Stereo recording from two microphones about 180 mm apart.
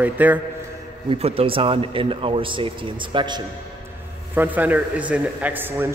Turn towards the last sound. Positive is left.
turn(degrees=-10)  # may be behind; listen again after turning